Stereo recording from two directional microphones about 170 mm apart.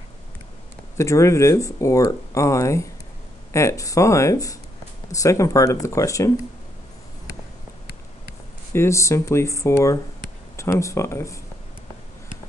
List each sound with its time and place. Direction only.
0.9 s speech: 15° left (ahead or behind)
8.7 s speech: 15° left (ahead or behind)